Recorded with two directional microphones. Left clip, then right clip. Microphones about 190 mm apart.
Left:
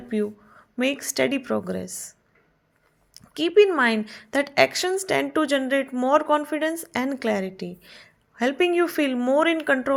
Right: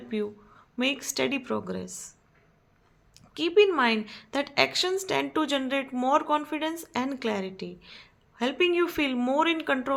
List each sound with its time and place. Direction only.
0.1 s speech: 25° left (ahead or behind)
3.2 s a woman's voice: 30° left (ahead or behind)